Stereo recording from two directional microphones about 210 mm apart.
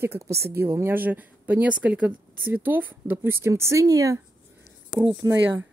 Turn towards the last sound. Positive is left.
turn(degrees=-15)  # may be behind; listen again after turning